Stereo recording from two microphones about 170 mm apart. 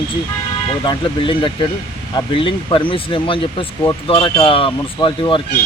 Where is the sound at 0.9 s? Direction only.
30° left (ahead or behind).